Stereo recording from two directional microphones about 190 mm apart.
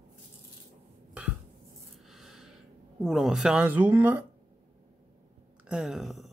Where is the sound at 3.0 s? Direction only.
Centre (ahead or behind).